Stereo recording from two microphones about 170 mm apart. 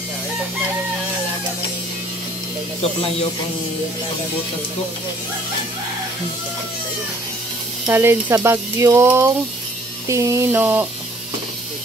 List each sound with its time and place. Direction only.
7.8 s speech: 15° right (ahead or behind)